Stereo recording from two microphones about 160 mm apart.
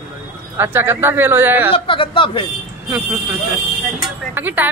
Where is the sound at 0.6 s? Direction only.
15° right (ahead or behind).